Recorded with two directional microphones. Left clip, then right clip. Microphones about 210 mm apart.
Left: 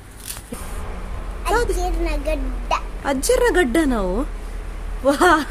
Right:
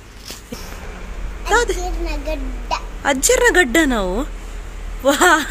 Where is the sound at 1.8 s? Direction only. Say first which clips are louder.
Left 2 dB; 30° left (ahead or behind).